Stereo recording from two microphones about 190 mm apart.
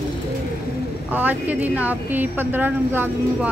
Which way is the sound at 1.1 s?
10° right (ahead or behind).